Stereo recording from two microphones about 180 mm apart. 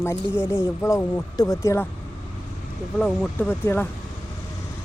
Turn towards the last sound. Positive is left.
turn(degrees=10)  # may be behind; listen again after turning